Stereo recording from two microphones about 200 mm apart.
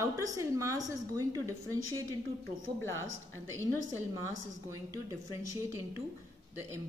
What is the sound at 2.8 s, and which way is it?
Speech, 15° left (ahead or behind).